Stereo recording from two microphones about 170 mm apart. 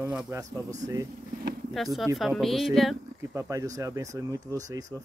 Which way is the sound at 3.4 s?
20° right (ahead or behind).